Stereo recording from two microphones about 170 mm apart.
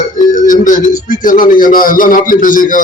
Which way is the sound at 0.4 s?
50° left (ahead or behind).